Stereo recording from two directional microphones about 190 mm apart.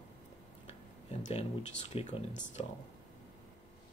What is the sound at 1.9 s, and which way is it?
Speech, 30° left (ahead or behind).